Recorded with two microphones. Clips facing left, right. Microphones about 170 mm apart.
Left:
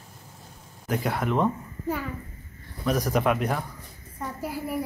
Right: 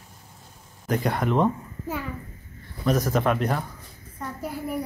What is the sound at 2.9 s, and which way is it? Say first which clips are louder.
A child's voice: right 1 dB; 15° left (ahead or behind).